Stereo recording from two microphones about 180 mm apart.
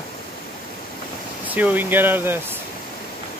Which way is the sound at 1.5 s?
10° right (ahead or behind).